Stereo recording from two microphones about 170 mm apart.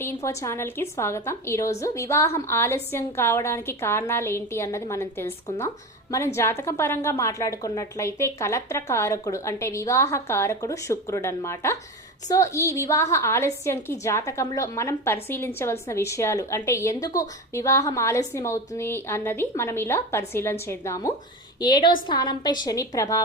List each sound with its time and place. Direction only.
0.0 s a woman's voice: 15° left (ahead or behind)